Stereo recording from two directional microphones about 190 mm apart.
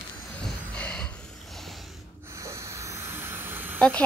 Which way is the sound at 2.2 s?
15° right (ahead or behind).